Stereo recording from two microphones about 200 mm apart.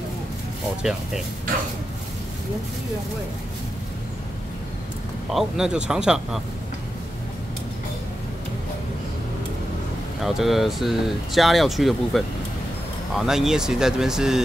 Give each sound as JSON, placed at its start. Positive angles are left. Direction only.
{"t": 5.3, "sound": "speech", "side_deg": 0}
{"t": 10.2, "sound": "speech", "side_deg": 0}
{"t": 13.2, "sound": "speech", "side_deg": 0}